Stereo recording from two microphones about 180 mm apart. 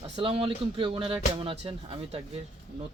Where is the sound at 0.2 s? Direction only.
30° right (ahead or behind).